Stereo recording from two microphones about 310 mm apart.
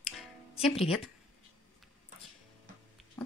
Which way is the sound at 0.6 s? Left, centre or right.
Centre.